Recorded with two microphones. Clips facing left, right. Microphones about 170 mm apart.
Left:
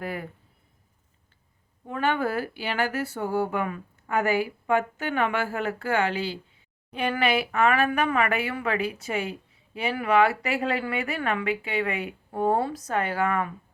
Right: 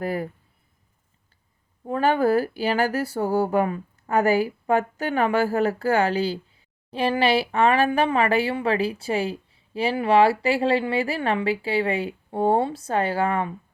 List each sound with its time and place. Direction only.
0.0 s speech: 40° right (ahead or behind)
1.9 s speech: 35° right (ahead or behind)